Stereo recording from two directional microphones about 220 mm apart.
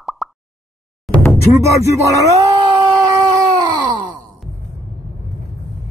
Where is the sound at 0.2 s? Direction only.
Centre (ahead or behind).